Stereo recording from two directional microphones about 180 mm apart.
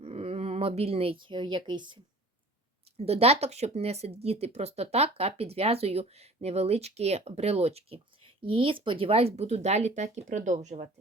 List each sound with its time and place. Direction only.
0.0 s speech: 35° right (ahead or behind)
3.0 s speech: 35° right (ahead or behind)